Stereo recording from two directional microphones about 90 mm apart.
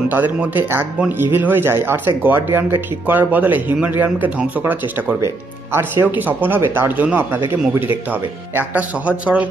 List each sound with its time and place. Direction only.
0.1 s speech: 20° right (ahead or behind)